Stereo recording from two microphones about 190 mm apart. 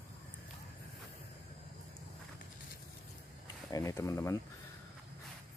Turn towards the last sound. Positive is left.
turn(degrees=15)  # may be behind; listen again after turning